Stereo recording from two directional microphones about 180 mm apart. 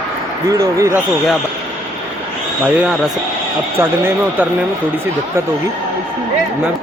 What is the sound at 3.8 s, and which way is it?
Speech, 10° right (ahead or behind).